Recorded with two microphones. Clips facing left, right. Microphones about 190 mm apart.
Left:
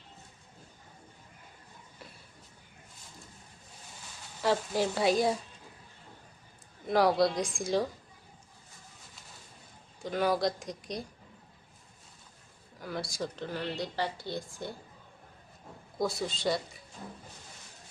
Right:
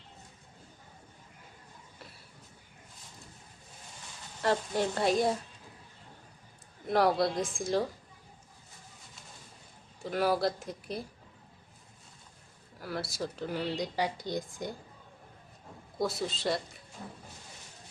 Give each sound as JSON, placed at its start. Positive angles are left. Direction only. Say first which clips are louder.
{"t": 4.4, "sound": "a woman's voice", "louder": "left 1 dB", "side_deg": 0}
{"t": 6.8, "sound": "a woman's voice", "louder": "left 1 dB", "side_deg": 0}
{"t": 10.0, "sound": "a woman's voice", "louder": "even", "side_deg": -5}
{"t": 12.8, "sound": "speech", "louder": "even", "side_deg": -5}
{"t": 16.0, "sound": "a woman's voice", "louder": "even", "side_deg": 0}